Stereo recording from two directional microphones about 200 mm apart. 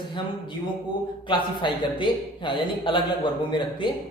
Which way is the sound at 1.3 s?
25° left (ahead or behind).